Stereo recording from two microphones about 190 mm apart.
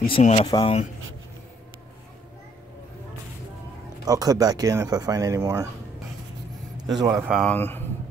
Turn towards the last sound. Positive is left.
turn(degrees=10)  # may be behind; listen again after turning